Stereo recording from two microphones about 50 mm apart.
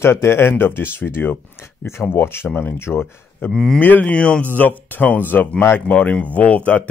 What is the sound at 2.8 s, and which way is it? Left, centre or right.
Speech, left.